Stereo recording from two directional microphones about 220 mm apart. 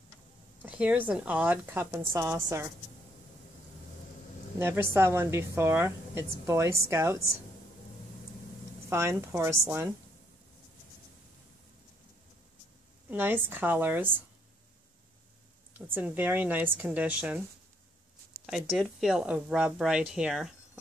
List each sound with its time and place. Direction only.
0.6 s a woman's voice: 5° right (ahead or behind)
4.6 s a woman's voice: 10° right (ahead or behind)
8.8 s a woman's voice: 10° right (ahead or behind)
13.1 s a woman's voice: 10° right (ahead or behind)
15.9 s a woman's voice: 10° right (ahead or behind)
18.4 s speech: centre (ahead or behind)